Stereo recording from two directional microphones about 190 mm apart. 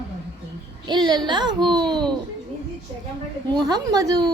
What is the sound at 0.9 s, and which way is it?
A child's voice, 25° right (ahead or behind).